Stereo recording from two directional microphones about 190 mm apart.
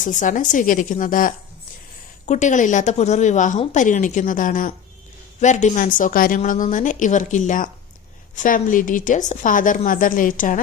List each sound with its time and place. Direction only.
0.0 s a woman's voice: 40° left (ahead or behind)